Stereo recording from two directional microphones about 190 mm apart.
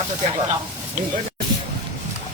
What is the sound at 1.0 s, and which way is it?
Speech, 40° right (ahead or behind).